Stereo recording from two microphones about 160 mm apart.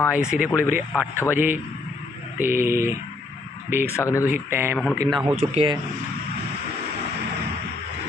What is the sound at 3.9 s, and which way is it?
Speech, 20° left (ahead or behind).